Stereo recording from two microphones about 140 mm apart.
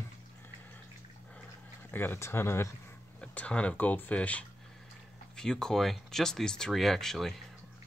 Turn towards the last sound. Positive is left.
turn(degrees=0)  # may be behind; listen again after turning